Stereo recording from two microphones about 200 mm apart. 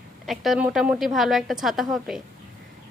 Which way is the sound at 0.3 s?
Centre (ahead or behind).